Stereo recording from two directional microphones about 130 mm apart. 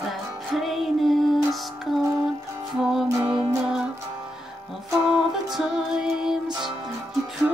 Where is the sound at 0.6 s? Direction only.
Centre (ahead or behind).